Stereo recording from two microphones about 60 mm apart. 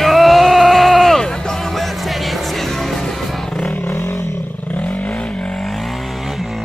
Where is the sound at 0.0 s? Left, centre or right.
Centre.